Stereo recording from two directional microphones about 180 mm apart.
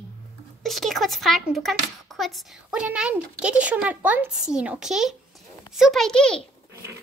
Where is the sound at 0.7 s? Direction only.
Centre (ahead or behind).